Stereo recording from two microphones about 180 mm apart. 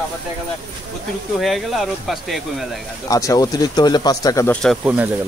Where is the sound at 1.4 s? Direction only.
Centre (ahead or behind).